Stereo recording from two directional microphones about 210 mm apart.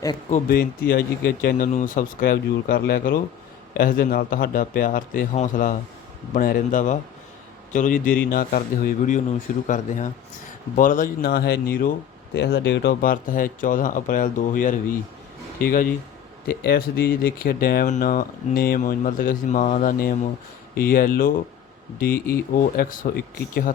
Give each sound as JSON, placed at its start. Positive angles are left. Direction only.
{"t": 0.3, "sound": "speech", "side_deg": 40}